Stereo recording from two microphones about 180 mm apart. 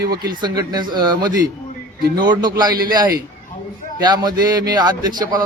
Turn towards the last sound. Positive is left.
turn(degrees=-25)  # may be behind; listen again after turning